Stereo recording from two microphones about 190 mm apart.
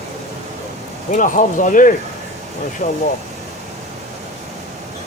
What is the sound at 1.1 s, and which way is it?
Speech, 45° left (ahead or behind).